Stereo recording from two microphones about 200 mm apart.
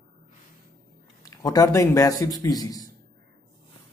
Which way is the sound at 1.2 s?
20° left (ahead or behind).